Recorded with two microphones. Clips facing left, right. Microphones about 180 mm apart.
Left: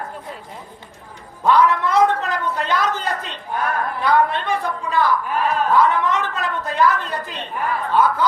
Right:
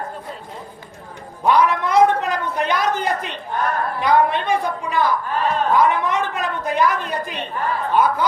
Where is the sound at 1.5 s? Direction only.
15° right (ahead or behind).